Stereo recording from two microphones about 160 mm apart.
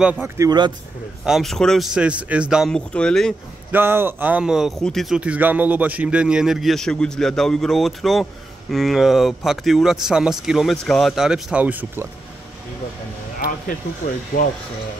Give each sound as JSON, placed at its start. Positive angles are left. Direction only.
{"t": 0.0, "sound": "speech", "side_deg": -10}
{"t": 0.5, "sound": "a man's voice", "side_deg": -30}
{"t": 1.2, "sound": "speech", "side_deg": 0}
{"t": 3.7, "sound": "speech", "side_deg": -15}